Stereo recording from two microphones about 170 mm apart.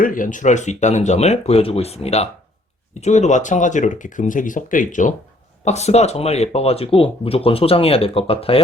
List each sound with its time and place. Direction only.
0.0 s speech: 55° left (ahead or behind); by 8.6 s 35° left (ahead or behind)